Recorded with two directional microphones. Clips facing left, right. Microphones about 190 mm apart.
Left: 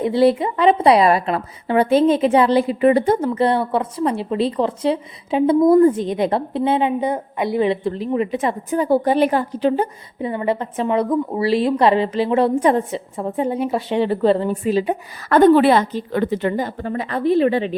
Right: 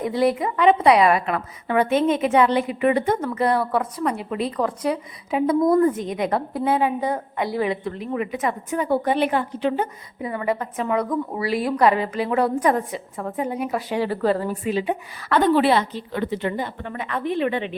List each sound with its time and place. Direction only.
0.0 s a woman's voice: 30° left (ahead or behind)
14.7 s a woman's voice: 40° left (ahead or behind)